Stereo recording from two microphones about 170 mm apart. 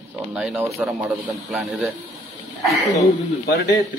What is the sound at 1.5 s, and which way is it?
Speech, centre (ahead or behind).